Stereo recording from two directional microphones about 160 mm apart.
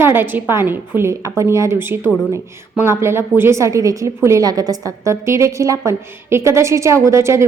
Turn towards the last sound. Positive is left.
turn(degrees=-15)  # may be behind; listen again after turning